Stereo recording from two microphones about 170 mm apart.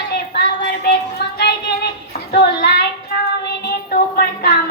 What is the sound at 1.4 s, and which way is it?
Child singing, 75° left (ahead or behind).